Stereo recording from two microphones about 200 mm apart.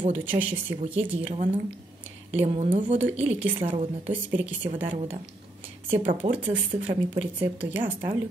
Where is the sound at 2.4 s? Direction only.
30° right (ahead or behind).